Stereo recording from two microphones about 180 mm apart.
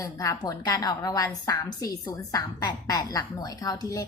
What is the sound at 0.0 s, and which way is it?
A woman's voice, 20° left (ahead or behind).